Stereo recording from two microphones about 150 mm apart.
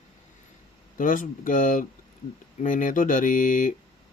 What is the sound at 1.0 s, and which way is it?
Speech, 65° left (ahead or behind).